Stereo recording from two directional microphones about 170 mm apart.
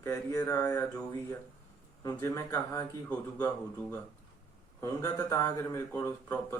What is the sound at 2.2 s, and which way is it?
Speech, 20° left (ahead or behind).